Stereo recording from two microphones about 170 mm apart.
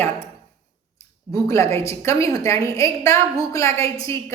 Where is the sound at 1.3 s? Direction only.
15° left (ahead or behind).